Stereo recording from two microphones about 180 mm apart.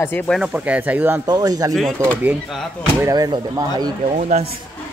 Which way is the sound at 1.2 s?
20° right (ahead or behind).